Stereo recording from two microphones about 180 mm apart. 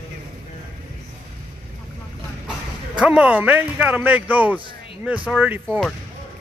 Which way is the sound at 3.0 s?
5° right (ahead or behind).